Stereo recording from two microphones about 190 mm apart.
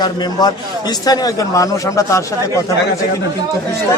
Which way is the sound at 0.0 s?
20° left (ahead or behind).